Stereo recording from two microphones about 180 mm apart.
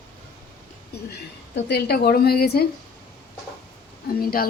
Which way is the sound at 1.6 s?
65° left (ahead or behind).